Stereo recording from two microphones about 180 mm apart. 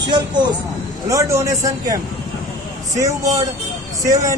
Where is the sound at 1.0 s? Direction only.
15° right (ahead or behind).